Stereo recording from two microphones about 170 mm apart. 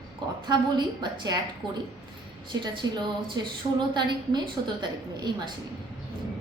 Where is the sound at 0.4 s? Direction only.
25° right (ahead or behind).